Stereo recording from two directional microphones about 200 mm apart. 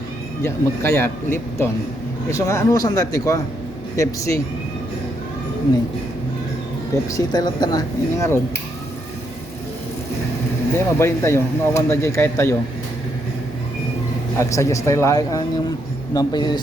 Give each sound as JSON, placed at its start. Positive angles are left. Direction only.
{"t": 0.4, "sound": "speech", "side_deg": 15}
{"t": 7.1, "sound": "speech", "side_deg": 20}
{"t": 10.8, "sound": "speech", "side_deg": 15}
{"t": 14.3, "sound": "speech", "side_deg": 15}